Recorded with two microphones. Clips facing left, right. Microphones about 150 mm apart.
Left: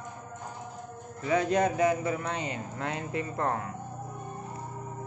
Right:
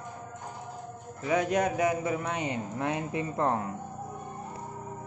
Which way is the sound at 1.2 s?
15° right (ahead or behind).